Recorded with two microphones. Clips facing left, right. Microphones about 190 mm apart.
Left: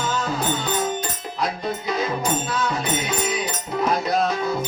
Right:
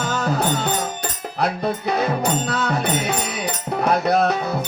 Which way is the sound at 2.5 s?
65° right (ahead or behind).